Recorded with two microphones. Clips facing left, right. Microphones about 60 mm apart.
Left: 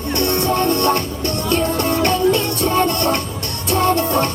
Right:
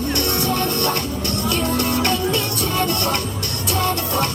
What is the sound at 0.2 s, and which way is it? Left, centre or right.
Music, left.